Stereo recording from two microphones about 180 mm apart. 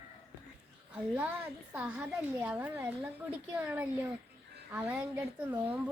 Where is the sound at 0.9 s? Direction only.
10° right (ahead or behind).